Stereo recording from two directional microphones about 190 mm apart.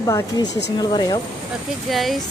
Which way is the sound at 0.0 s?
15° left (ahead or behind).